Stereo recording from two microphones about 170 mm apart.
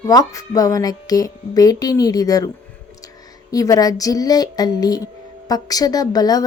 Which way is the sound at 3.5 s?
20° left (ahead or behind).